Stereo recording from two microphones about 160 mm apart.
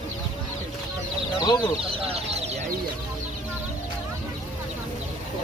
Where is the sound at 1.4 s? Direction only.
25° left (ahead or behind).